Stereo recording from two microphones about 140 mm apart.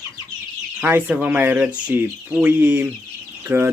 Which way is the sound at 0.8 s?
15° right (ahead or behind).